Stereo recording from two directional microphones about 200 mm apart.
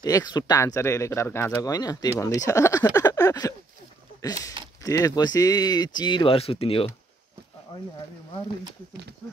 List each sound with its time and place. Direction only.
0.0 s speech: 20° left (ahead or behind)